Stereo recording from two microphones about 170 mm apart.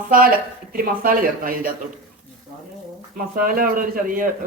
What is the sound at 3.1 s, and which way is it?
A man's voice, 55° right (ahead or behind).